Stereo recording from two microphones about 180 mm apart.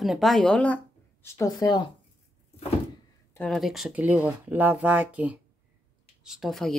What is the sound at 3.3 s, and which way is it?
Speech, 5° left (ahead or behind).